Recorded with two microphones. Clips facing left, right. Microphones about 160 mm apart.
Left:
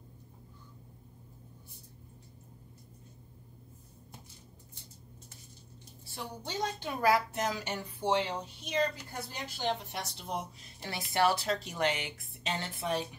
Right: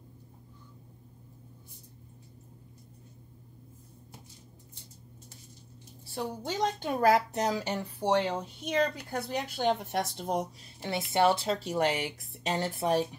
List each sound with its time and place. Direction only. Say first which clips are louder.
6.1 s a woman's voice: right 5 dB; 45° right (ahead or behind)
8.1 s speech: right 3 dB; 50° right (ahead or behind)
10.8 s a woman's voice: right 3 dB; 25° right (ahead or behind); by 13.0 s 40° right (ahead or behind)